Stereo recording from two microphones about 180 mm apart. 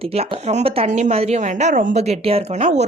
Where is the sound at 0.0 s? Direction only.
35° right (ahead or behind).